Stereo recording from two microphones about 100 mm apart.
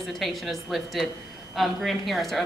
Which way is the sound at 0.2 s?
Centre (ahead or behind).